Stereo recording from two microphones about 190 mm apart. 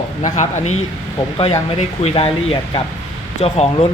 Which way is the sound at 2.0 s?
30° left (ahead or behind).